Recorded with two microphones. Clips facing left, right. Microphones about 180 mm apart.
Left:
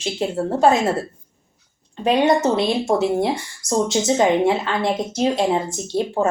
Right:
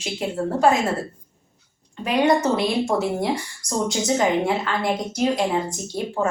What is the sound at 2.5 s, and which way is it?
A woman's voice, 25° left (ahead or behind).